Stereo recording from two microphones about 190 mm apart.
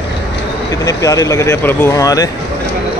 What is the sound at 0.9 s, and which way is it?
Speech, 15° left (ahead or behind).